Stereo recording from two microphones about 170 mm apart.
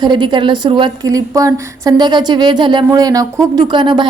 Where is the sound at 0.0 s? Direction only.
25° right (ahead or behind).